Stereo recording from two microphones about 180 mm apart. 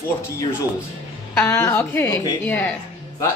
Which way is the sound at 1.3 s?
10° left (ahead or behind).